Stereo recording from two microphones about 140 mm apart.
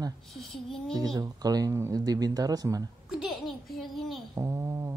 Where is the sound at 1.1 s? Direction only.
25° right (ahead or behind).